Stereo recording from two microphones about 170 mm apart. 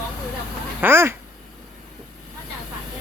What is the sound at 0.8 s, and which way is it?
Speech, 15° right (ahead or behind).